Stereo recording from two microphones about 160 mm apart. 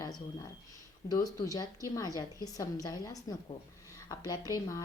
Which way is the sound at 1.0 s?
20° left (ahead or behind).